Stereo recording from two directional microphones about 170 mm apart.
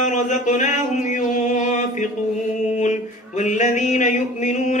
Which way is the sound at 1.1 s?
45° left (ahead or behind).